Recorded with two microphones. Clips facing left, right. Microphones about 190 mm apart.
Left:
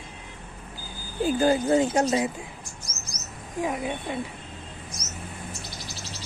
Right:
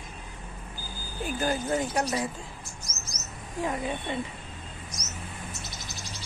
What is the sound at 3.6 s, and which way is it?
Speech, 10° left (ahead or behind).